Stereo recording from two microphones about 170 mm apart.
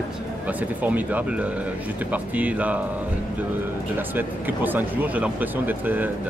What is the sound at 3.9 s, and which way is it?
Speech, 10° right (ahead or behind).